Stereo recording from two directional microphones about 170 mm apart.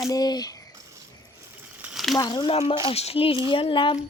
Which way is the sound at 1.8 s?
5° right (ahead or behind).